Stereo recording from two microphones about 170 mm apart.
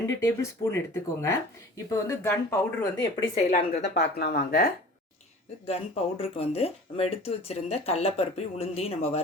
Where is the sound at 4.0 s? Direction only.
70° left (ahead or behind).